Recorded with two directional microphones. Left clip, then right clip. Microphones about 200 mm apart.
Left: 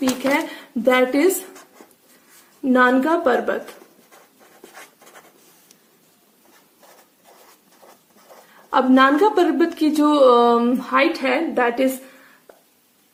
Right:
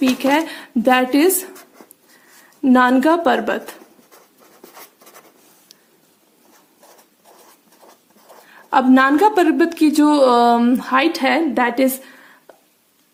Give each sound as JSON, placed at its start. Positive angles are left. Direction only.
{"t": 0.3, "sound": "a woman's voice", "side_deg": -40}
{"t": 2.6, "sound": "a woman's voice", "side_deg": -45}
{"t": 8.7, "sound": "a woman's voice", "side_deg": -35}